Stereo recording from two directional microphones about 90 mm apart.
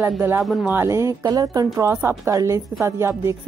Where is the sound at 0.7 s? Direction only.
30° right (ahead or behind).